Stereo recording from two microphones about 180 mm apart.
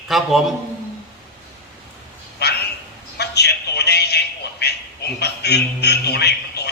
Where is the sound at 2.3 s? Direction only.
65° left (ahead or behind).